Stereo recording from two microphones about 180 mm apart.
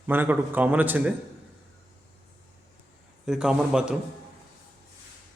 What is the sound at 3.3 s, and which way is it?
Speech, 5° right (ahead or behind).